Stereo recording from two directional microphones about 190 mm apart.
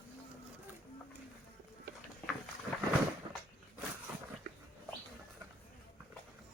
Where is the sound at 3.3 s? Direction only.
30° right (ahead or behind).